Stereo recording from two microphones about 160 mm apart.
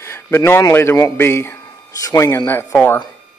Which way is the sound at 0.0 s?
15° left (ahead or behind).